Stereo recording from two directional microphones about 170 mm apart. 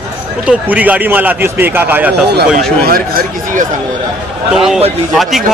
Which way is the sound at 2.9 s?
60° right (ahead or behind).